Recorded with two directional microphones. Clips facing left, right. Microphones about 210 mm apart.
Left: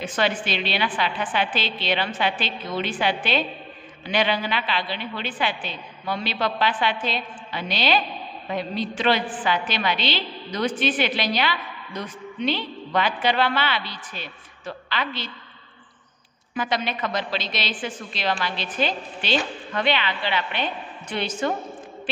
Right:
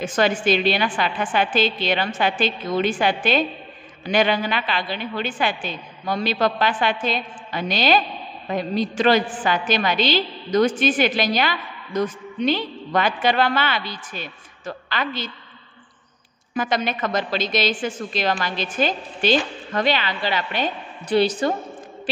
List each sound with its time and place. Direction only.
0.0 s a woman's voice: 45° right (ahead or behind)
16.5 s a woman's voice: 45° right (ahead or behind)